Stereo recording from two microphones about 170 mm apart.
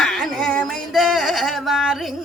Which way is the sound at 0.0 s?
Centre (ahead or behind).